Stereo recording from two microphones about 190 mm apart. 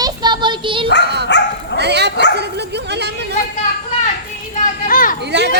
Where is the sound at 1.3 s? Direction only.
65° left (ahead or behind).